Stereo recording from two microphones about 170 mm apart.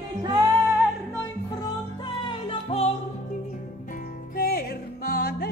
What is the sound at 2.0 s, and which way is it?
Music, 30° left (ahead or behind).